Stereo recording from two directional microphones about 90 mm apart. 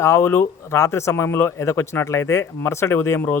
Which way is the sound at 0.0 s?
30° left (ahead or behind).